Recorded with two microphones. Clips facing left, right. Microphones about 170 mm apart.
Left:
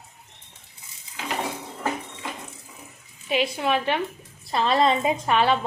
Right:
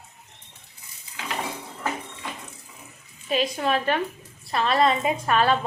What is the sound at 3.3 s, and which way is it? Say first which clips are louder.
Speech: even; 10° left (ahead or behind).